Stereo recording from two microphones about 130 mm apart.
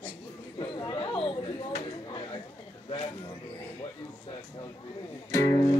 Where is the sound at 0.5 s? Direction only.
30° left (ahead or behind).